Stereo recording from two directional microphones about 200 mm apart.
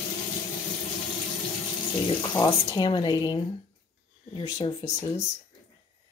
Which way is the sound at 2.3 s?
20° left (ahead or behind).